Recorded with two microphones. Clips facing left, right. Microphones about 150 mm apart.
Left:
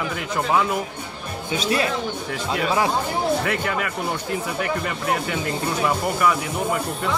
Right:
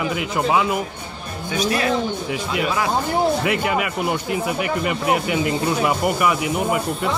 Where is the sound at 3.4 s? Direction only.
15° right (ahead or behind).